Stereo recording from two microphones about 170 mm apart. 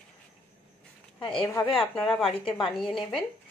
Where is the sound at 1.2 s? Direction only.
30° left (ahead or behind).